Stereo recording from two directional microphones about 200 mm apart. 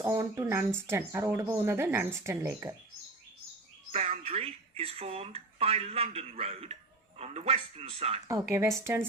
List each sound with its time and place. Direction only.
0.0 s a woman's voice: 15° right (ahead or behind)
3.9 s a man's voice: 30° right (ahead or behind)
8.3 s a woman's voice: 15° right (ahead or behind)